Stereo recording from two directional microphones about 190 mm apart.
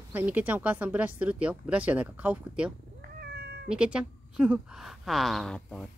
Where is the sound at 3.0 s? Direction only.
55° right (ahead or behind).